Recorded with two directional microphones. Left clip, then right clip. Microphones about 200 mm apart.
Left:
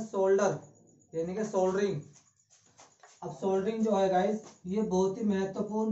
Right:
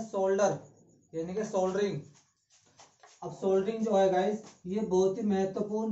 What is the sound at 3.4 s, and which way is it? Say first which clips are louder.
Speech: right 1 dB; 10° left (ahead or behind).